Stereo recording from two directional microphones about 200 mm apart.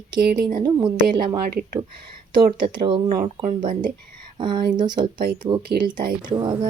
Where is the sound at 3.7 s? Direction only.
40° right (ahead or behind).